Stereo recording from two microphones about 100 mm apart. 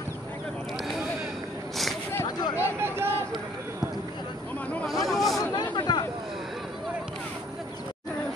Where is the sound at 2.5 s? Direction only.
25° right (ahead or behind).